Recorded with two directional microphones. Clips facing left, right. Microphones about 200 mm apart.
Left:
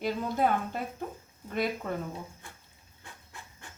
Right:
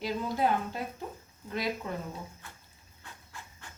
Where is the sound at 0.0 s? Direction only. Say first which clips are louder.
Left 1 dB; 50° left (ahead or behind).